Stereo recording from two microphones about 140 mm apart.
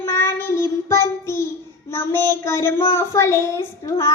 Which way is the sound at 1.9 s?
15° left (ahead or behind).